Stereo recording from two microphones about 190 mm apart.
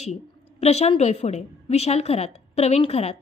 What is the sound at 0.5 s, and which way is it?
A woman's voice, 35° left (ahead or behind).